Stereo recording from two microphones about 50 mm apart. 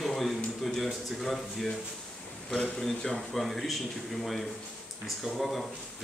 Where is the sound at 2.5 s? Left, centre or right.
Centre.